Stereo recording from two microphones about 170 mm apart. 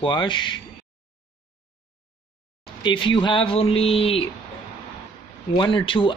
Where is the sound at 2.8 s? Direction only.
30° left (ahead or behind).